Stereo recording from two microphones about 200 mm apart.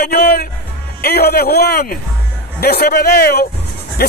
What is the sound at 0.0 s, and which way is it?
Music, 50° left (ahead or behind).